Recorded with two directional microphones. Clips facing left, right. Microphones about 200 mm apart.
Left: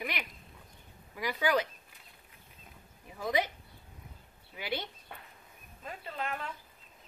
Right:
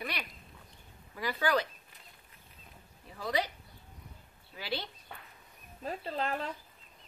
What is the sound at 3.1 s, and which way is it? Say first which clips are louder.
Speech: left 2 dB; 20° left (ahead or behind).